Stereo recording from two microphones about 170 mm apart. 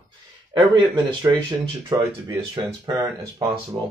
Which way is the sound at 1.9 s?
20° right (ahead or behind).